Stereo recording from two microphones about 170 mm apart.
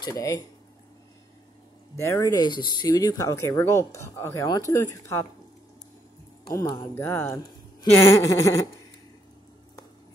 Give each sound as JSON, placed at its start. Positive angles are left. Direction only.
{"t": 0.0, "sound": "speech", "side_deg": 20}
{"t": 2.0, "sound": "speech", "side_deg": 15}
{"t": 6.4, "sound": "speech", "side_deg": 25}
{"t": 7.0, "sound": "speech", "side_deg": 15}